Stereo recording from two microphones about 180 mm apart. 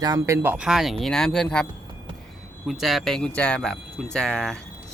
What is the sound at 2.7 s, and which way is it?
Speech, centre (ahead or behind).